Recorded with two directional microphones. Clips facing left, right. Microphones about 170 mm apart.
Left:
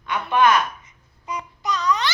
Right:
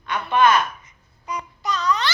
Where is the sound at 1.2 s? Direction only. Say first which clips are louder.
Even; 20° left (ahead or behind).